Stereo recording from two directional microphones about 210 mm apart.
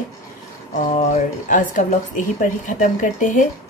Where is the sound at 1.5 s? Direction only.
40° left (ahead or behind).